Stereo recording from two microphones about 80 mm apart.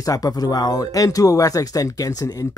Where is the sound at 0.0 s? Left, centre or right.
Left.